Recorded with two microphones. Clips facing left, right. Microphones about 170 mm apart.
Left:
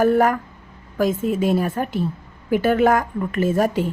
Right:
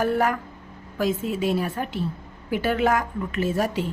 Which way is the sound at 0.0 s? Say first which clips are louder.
Left 6 dB; 45° left (ahead or behind).